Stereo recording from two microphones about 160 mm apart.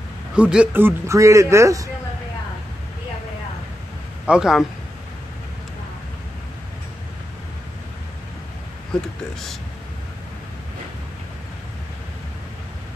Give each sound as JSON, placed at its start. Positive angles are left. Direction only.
{"t": 0.4, "sound": "speech", "side_deg": -5}
{"t": 4.3, "sound": "a man's voice", "side_deg": -5}
{"t": 8.9, "sound": "a man's voice", "side_deg": 5}